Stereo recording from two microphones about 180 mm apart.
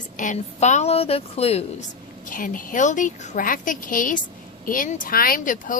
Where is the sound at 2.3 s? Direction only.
50° left (ahead or behind).